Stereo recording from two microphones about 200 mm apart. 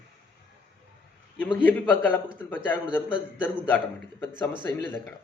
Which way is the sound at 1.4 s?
10° left (ahead or behind).